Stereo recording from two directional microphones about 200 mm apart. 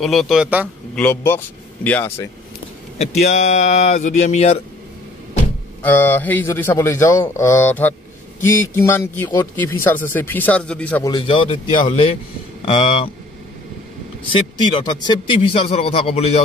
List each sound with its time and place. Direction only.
0.0 s a man's voice: centre (ahead or behind)
0.9 s speech: 10° left (ahead or behind)
3.0 s speech: 35° left (ahead or behind)
5.8 s speech: 10° left (ahead or behind)
11.1 s speech: 25° left (ahead or behind)
14.3 s speech: 20° left (ahead or behind)